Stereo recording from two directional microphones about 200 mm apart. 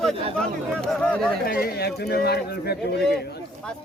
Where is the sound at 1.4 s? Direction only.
50° left (ahead or behind).